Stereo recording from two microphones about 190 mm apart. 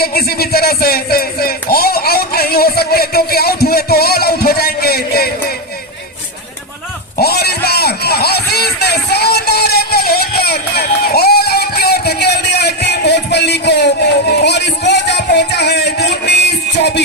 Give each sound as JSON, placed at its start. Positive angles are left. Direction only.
{"t": 0.0, "sound": "music", "side_deg": 55}
{"t": 7.2, "sound": "music", "side_deg": 55}